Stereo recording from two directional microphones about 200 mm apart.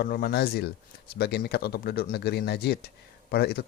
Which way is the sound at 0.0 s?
50° left (ahead or behind).